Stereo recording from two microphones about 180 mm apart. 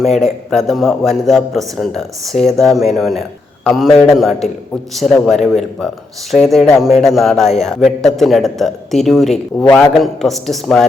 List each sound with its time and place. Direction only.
0.0 s a man's voice: centre (ahead or behind)